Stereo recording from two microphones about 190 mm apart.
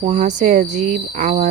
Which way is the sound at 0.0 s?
40° right (ahead or behind).